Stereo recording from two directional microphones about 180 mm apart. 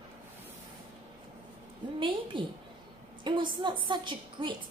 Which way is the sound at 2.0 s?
30° right (ahead or behind).